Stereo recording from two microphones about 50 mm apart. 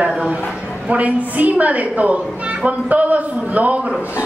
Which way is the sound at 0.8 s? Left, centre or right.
Right.